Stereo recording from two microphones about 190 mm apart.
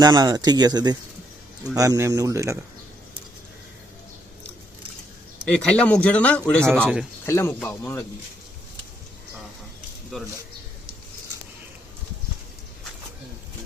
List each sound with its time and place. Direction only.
0.0 s speech: 20° right (ahead or behind)
5.5 s speech: 5° left (ahead or behind)